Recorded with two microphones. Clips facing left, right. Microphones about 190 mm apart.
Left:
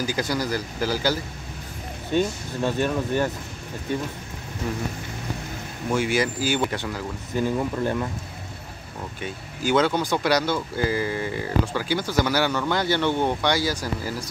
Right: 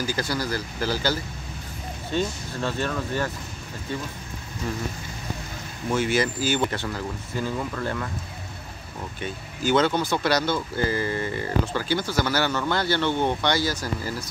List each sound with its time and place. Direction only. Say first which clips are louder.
0.0 s speech: left 2 dB; 15° left (ahead or behind)
2.1 s speech: left 4 dB; 15° left (ahead or behind)
5.9 s speech: even; 10° left (ahead or behind)
9.2 s speech: right 1 dB; 10° left (ahead or behind)